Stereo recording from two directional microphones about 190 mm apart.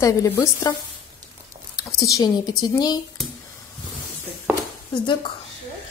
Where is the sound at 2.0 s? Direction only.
15° left (ahead or behind).